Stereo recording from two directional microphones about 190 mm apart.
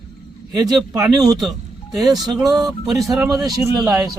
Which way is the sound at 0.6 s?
20° right (ahead or behind).